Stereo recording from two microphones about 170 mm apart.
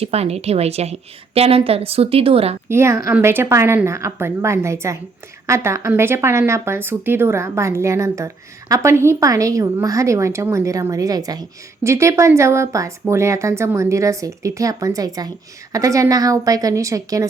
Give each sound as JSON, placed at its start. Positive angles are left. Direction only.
{"t": 0.0, "sound": "a woman's voice", "side_deg": -35}
{"t": 2.6, "sound": "a woman's voice", "side_deg": -15}